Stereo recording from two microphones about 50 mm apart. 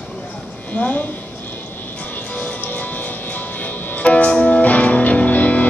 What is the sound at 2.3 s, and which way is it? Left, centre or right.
Music, left.